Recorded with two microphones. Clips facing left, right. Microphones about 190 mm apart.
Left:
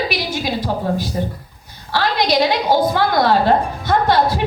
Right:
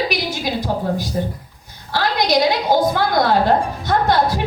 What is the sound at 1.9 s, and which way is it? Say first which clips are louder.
A woman's voice: even; 50° right (ahead or behind).